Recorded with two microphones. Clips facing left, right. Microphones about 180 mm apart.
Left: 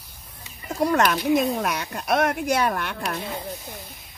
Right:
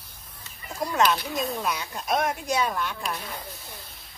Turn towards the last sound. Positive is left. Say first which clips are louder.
# left 2 dB
turn(degrees=60)  # may be behind; listen again after turning